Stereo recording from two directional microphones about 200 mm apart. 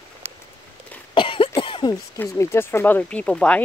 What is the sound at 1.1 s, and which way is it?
Cough, 25° left (ahead or behind).